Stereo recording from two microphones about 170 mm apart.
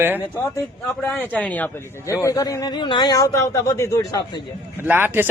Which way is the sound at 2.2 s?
20° left (ahead or behind).